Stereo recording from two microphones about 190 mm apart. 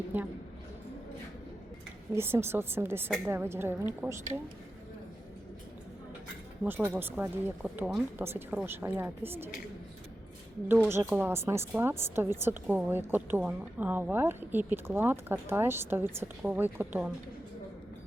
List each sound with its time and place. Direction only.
0.1 s a woman's voice: 10° right (ahead or behind)
2.1 s a woman's voice: 10° right (ahead or behind)
6.7 s a woman's voice: 10° right (ahead or behind)
10.8 s a woman's voice: 15° right (ahead or behind)